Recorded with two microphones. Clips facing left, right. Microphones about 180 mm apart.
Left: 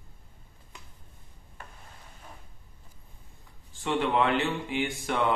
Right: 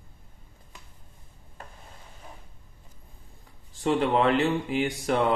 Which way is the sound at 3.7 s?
35° right (ahead or behind).